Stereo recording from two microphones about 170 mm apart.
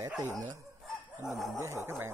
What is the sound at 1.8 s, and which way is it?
Speech, 15° right (ahead or behind).